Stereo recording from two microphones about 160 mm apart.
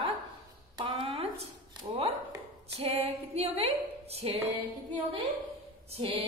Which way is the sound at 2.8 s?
40° right (ahead or behind).